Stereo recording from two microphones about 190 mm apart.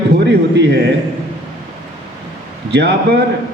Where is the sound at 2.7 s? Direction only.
60° right (ahead or behind).